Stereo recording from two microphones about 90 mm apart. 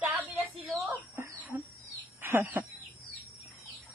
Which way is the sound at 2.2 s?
25° right (ahead or behind).